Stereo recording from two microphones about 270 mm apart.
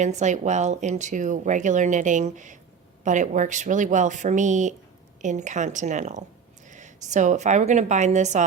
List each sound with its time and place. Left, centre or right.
0.0 s speech: right